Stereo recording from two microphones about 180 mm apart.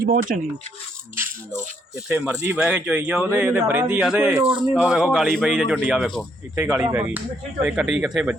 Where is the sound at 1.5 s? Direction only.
45° right (ahead or behind).